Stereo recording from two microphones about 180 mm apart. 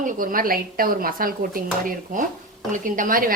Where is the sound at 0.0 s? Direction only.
50° right (ahead or behind).